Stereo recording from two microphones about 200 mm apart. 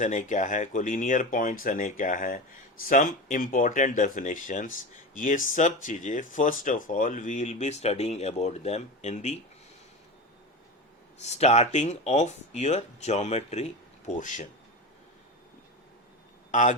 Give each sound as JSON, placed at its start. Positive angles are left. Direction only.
{"t": 0.0, "sound": "speech", "side_deg": 40}
{"t": 11.2, "sound": "speech", "side_deg": 35}
{"t": 16.5, "sound": "a man's voice", "side_deg": 40}